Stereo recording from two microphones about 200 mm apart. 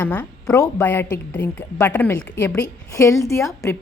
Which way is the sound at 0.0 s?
10° left (ahead or behind).